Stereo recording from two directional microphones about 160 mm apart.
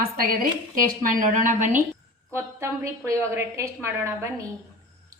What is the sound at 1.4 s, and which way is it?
Speech, 50° right (ahead or behind).